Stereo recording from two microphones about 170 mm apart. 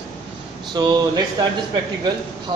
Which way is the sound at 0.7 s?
25° right (ahead or behind).